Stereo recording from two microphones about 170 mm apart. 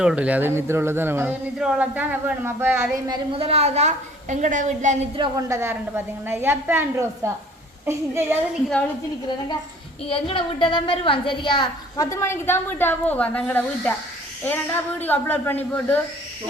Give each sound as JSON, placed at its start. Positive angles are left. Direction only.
{"t": 0.0, "sound": "speech", "side_deg": -5}
{"t": 3.3, "sound": "a woman's voice", "side_deg": -35}
{"t": 5.5, "sound": "speech", "side_deg": -15}
{"t": 10.1, "sound": "a woman's voice", "side_deg": 30}